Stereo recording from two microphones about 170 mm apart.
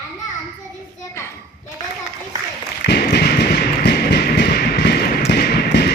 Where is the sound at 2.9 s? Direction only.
75° left (ahead or behind).